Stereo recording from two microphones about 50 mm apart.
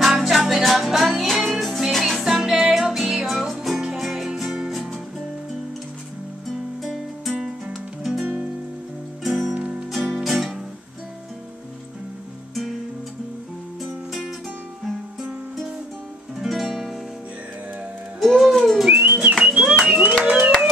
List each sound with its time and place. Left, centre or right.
0.0 s music: centre
6.5 s music: centre
9.2 s music: centre
16.3 s music: centre
18.2 s music: centre
18.6 s whistling: centre
18.9 s music: right
19.8 s a sound: right